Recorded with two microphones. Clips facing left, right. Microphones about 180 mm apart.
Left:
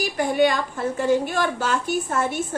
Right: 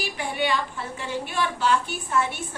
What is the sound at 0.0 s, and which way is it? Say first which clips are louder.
A woman's voice: left 8 dB; 45° left (ahead or behind).